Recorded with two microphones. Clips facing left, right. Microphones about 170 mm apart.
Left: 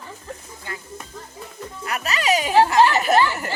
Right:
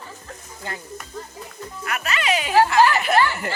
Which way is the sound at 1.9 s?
35° left (ahead or behind).